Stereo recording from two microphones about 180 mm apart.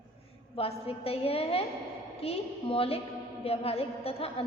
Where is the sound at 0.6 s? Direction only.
30° left (ahead or behind).